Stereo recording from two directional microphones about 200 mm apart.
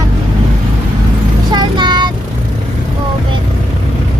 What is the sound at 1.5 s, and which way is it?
Vehicle, 20° right (ahead or behind).